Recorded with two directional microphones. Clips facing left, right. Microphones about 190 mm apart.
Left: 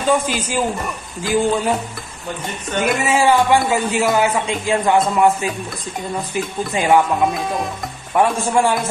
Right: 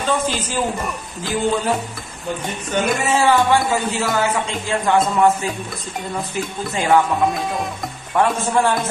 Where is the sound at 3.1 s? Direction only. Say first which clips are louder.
Left 2 dB; 15° left (ahead or behind).